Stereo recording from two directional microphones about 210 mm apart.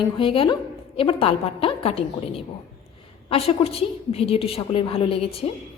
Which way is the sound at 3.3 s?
30° left (ahead or behind).